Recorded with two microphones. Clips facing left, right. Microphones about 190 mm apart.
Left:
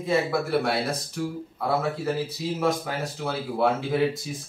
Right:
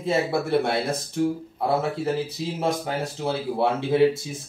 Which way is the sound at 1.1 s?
25° right (ahead or behind).